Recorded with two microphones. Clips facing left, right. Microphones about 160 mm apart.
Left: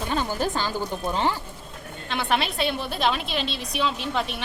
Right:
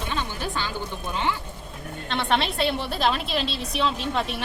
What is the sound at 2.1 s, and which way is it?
A woman's voice, centre (ahead or behind).